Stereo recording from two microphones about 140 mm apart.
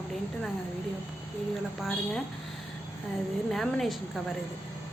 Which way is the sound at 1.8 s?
Centre (ahead or behind).